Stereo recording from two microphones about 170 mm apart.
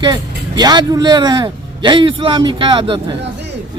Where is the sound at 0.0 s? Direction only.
25° right (ahead or behind).